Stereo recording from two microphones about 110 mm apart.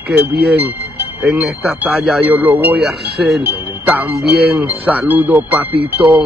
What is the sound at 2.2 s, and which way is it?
Speech, 15° right (ahead or behind).